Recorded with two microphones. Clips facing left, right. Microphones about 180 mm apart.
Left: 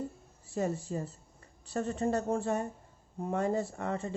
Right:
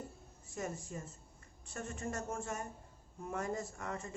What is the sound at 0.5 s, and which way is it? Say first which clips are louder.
A woman's voice: left 9 dB; 30° left (ahead or behind).